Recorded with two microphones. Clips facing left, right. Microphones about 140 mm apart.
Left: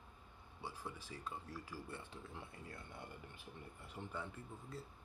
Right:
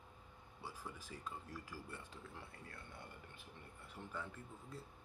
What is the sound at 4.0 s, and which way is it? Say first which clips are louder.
Speech: left 3 dB; 25° left (ahead or behind).